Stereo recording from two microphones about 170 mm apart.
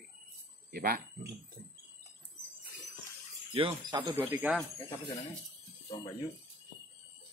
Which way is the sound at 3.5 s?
30° right (ahead or behind).